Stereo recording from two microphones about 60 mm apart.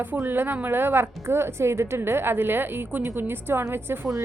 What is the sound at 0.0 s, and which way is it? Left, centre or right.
A woman's voice, right.